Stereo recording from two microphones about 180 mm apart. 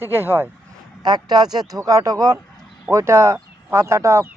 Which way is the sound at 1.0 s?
25° right (ahead or behind).